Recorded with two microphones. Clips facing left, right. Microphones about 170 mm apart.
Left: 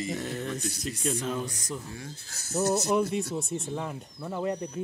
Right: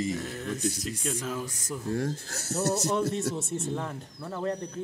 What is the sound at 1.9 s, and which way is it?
Speech, 75° right (ahead or behind).